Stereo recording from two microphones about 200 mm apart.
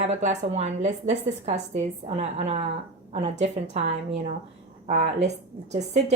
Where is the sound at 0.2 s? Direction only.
35° right (ahead or behind).